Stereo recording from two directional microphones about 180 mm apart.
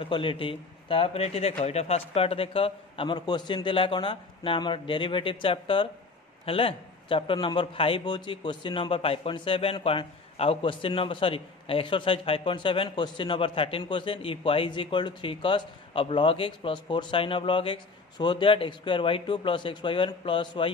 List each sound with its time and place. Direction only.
0.0 s a man's voice: 30° left (ahead or behind)